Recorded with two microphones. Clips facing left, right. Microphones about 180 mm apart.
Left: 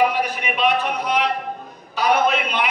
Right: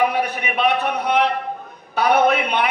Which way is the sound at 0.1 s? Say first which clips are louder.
Right 1 dB; 65° right (ahead or behind).